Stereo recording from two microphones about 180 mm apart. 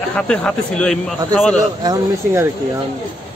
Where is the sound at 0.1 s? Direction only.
5° left (ahead or behind).